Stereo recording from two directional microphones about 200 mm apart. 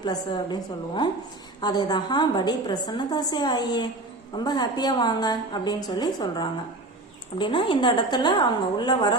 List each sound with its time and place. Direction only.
0.0 s a woman's voice: 20° left (ahead or behind)